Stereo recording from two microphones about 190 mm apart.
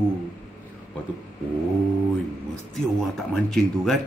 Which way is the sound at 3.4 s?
Centre (ahead or behind).